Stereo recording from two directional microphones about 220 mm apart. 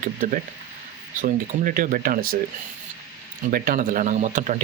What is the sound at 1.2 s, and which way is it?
Speech, 40° right (ahead or behind).